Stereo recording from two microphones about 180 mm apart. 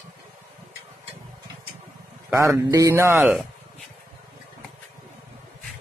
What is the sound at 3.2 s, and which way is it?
Speech, centre (ahead or behind).